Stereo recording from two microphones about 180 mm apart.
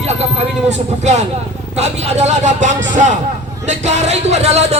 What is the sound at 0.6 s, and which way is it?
A man's voice, 40° right (ahead or behind).